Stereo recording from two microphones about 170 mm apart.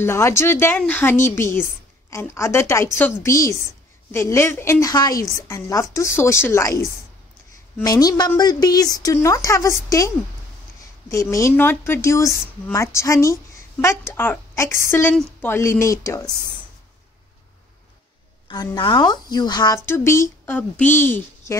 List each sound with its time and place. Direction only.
0.0 s a woman's voice: 15° left (ahead or behind)
18.5 s speech: 25° left (ahead or behind)